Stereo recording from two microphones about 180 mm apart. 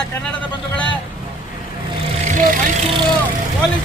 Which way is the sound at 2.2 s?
45° right (ahead or behind).